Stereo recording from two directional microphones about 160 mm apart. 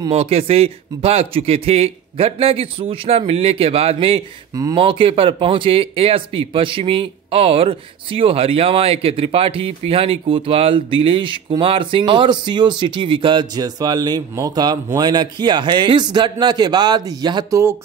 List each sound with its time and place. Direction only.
0.1 s speech: 40° right (ahead or behind); by 17.7 s 20° right (ahead or behind)